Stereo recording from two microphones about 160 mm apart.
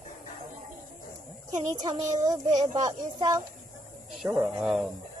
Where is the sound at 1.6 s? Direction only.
20° right (ahead or behind).